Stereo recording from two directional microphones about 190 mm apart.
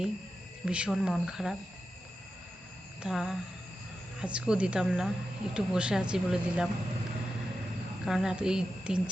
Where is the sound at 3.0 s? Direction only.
Centre (ahead or behind).